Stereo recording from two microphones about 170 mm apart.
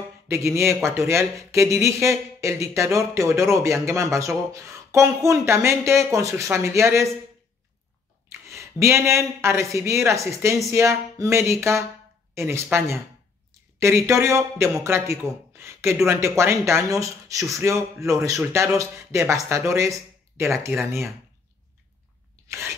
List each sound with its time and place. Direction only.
0.3 s speech: 15° right (ahead or behind)
8.3 s speech: 15° right (ahead or behind)
22.5 s rub: 15° right (ahead or behind)